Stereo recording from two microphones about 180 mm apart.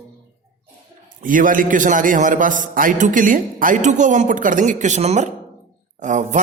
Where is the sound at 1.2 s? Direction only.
45° right (ahead or behind).